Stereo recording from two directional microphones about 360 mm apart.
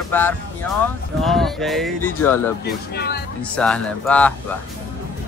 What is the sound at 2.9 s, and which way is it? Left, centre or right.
Speech, left.